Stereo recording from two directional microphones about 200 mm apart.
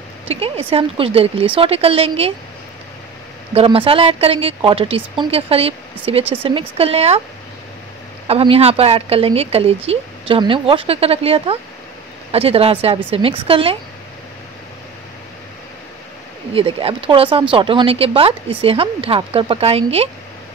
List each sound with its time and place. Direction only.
0.3 s speech: 30° right (ahead or behind)
3.5 s speech: 25° right (ahead or behind)
8.3 s speech: 30° right (ahead or behind)
16.5 s speech: 25° right (ahead or behind)